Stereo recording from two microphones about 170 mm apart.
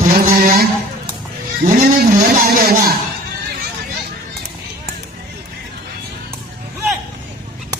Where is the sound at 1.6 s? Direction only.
55° right (ahead or behind).